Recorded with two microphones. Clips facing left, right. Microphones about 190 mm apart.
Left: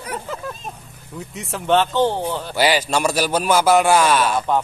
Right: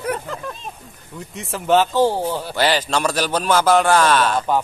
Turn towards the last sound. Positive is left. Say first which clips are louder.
# even
turn(degrees=10)  # may be behind; listen again after turning